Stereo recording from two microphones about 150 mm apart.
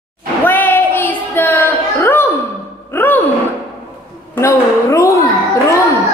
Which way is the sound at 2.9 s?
15° left (ahead or behind).